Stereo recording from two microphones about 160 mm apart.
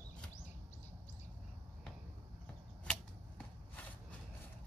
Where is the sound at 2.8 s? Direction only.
5° left (ahead or behind).